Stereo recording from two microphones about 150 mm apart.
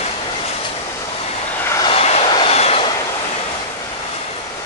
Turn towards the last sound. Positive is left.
turn(degrees=45)  # may be behind; listen again after turning